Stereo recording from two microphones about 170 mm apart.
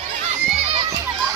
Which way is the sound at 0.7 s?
35° right (ahead or behind).